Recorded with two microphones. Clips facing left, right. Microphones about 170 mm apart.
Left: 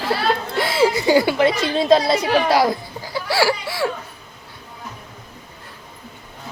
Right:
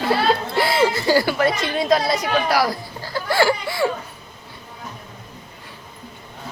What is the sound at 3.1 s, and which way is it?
Speech, 5° left (ahead or behind).